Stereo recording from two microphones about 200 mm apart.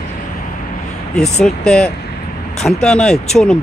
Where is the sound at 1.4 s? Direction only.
5° left (ahead or behind).